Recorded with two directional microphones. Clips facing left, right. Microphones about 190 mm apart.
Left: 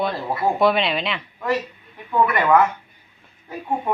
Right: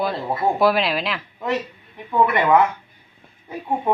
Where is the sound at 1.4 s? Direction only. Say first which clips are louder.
Left 1 dB; 20° right (ahead or behind).